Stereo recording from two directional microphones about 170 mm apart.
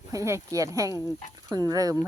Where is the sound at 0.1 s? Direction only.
15° right (ahead or behind).